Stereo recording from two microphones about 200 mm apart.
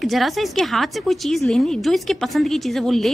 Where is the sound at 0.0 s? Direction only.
Centre (ahead or behind).